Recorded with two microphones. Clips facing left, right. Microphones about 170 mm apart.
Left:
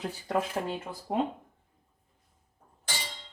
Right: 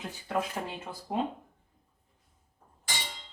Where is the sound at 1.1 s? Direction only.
20° left (ahead or behind).